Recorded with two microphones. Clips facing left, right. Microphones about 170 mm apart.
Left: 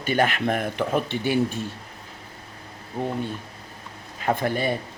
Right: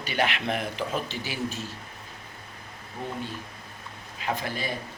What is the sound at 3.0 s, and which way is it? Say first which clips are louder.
Speech: left 8 dB; 35° left (ahead or behind).